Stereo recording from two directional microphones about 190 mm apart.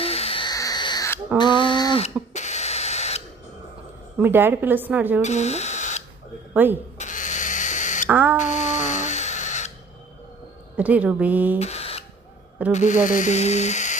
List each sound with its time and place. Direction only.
0.0 s a sound: 30° left (ahead or behind)
4.2 s a woman's voice: 10° right (ahead or behind)
5.2 s speech: 35° left (ahead or behind)
6.5 s speech: 10° right (ahead or behind)
7.0 s owl: 40° left (ahead or behind)
8.1 s a woman's voice: 10° right (ahead or behind)
8.4 s music: 40° left (ahead or behind)
10.8 s a woman's voice: 10° right (ahead or behind)
11.6 s a sound: 35° left (ahead or behind)
12.7 s speech: 40° left (ahead or behind)